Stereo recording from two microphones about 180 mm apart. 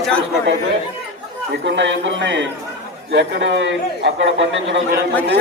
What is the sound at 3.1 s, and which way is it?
A man's voice, 80° right.